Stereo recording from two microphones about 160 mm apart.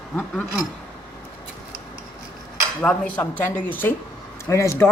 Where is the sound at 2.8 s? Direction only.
10° left (ahead or behind).